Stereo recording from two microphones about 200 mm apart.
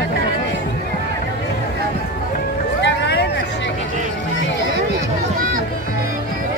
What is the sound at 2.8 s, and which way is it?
Vehicle, 60° left (ahead or behind).